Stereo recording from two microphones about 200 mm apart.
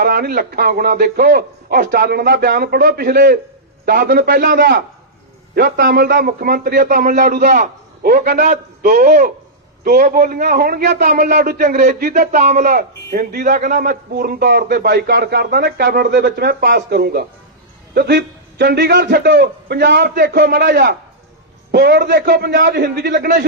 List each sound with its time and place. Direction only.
0.0 s a man's voice: 50° right (ahead or behind)